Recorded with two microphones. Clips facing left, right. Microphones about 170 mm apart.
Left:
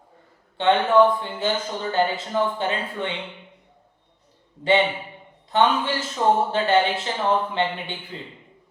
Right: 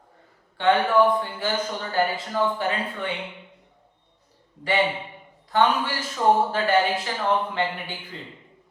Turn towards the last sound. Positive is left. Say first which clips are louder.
# left 2 dB
turn(degrees=25)  # may be behind; listen again after turning